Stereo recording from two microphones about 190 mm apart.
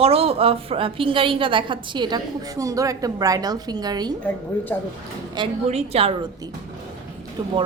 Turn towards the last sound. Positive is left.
turn(degrees=-25)  # may be behind; listen again after turning